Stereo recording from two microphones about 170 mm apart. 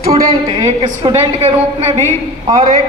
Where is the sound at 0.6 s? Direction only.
35° right (ahead or behind).